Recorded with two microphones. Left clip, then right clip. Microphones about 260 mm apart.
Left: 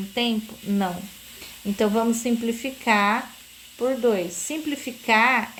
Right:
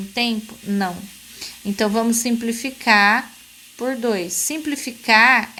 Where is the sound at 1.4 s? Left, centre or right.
Right.